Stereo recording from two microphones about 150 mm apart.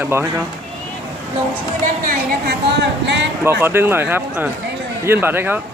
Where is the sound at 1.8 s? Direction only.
65° right (ahead or behind).